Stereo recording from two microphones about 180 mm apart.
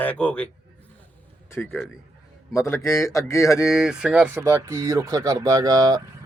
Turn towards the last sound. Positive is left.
turn(degrees=-20)  # may be behind; listen again after turning